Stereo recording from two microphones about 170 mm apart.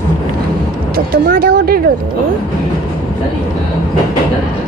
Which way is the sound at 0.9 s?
60° right (ahead or behind).